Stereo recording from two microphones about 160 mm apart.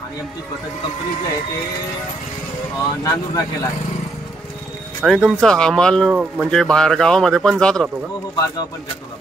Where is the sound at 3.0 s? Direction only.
20° left (ahead or behind).